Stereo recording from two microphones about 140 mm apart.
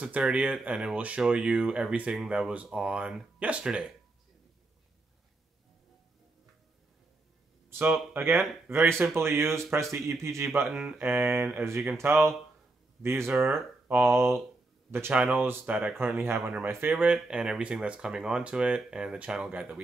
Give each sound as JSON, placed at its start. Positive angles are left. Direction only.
{"t": 0.0, "sound": "speech", "side_deg": -10}
{"t": 7.8, "sound": "speech", "side_deg": -15}
{"t": 16.9, "sound": "speech", "side_deg": -5}